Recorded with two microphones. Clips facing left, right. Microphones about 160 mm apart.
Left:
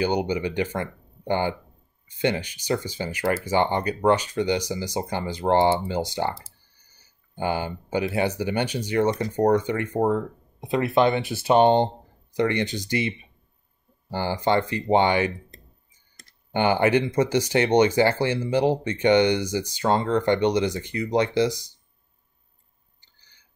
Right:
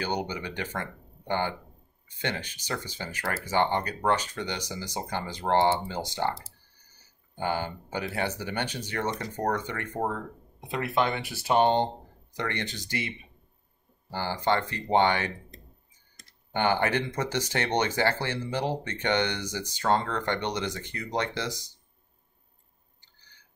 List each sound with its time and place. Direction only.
0.0 s speech: 15° left (ahead or behind)
7.3 s speech: 15° left (ahead or behind)
14.1 s speech: 15° left (ahead or behind)
16.5 s speech: 15° left (ahead or behind)